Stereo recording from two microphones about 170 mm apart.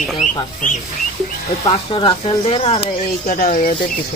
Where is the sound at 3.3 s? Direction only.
50° left (ahead or behind).